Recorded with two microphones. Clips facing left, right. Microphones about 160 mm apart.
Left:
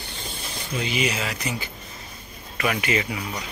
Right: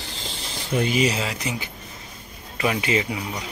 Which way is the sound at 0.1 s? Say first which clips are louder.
Even; 90° right.